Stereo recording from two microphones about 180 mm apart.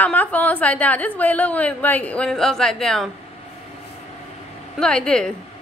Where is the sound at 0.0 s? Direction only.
10° left (ahead or behind).